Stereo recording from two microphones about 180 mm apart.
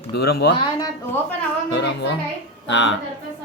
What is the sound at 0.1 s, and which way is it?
Speech, 70° left (ahead or behind).